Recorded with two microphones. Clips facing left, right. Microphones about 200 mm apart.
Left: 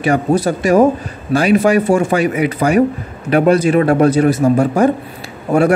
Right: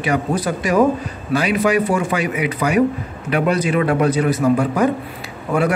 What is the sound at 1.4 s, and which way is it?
A man's voice, 40° left (ahead or behind).